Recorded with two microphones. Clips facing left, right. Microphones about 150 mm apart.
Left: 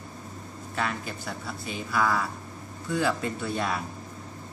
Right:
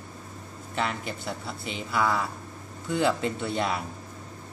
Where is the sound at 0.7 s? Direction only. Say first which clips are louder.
Right 1 dB; 25° right (ahead or behind).